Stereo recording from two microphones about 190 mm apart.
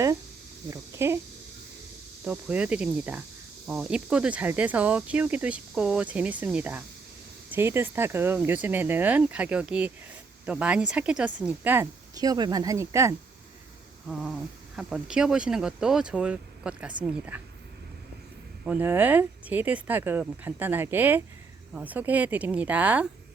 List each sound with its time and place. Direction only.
0.7 s speech: 15° right (ahead or behind)
2.2 s speech: 10° right (ahead or behind)
14.8 s speech: 5° right (ahead or behind)
18.6 s speech: 10° right (ahead or behind)